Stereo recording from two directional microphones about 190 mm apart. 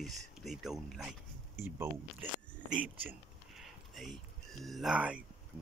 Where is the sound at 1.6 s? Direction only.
15° right (ahead or behind).